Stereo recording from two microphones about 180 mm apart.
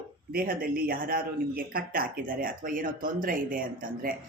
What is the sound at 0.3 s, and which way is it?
Speech, 50° right (ahead or behind).